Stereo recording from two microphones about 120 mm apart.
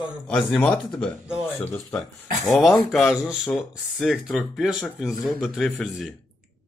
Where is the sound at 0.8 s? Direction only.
5° left (ahead or behind).